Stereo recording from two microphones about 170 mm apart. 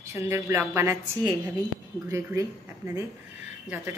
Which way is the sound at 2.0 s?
20° right (ahead or behind).